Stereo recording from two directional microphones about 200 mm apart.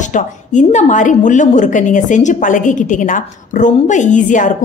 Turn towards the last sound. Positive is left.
turn(degrees=40)  # may be behind; listen again after turning